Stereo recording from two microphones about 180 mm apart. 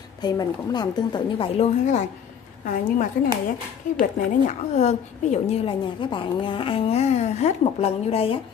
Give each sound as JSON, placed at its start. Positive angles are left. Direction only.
{"t": 0.2, "sound": "a woman's voice", "side_deg": 20}
{"t": 1.6, "sound": "a woman's voice", "side_deg": 40}